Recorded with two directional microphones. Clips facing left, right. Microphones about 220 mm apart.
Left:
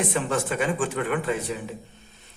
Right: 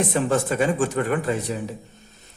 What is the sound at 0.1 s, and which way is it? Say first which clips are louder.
A man's voice: right 4 dB; 40° right (ahead or behind).